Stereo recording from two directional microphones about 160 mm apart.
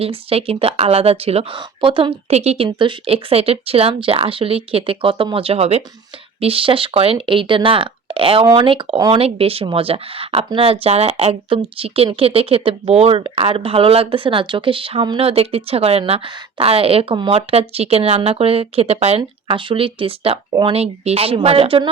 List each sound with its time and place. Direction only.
0.0 s a woman's voice: 35° right (ahead or behind)